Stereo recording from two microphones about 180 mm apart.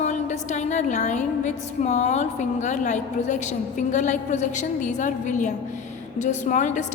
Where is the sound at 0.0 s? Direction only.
40° left (ahead or behind).